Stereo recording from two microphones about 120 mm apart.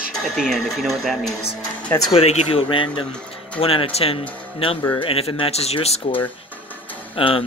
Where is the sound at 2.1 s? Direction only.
60° left (ahead or behind).